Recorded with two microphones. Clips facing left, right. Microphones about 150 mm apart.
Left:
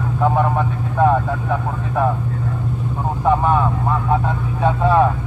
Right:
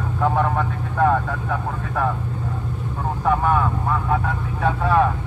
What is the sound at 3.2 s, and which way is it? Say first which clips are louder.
Speech: left 3 dB; 20° left (ahead or behind).